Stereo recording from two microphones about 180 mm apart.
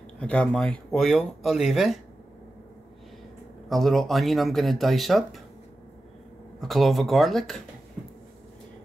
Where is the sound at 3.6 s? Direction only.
Centre (ahead or behind).